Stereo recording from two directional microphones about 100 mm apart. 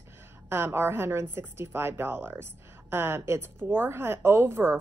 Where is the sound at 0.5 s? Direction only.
25° right (ahead or behind).